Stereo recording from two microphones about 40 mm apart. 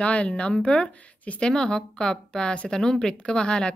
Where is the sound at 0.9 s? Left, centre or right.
Left.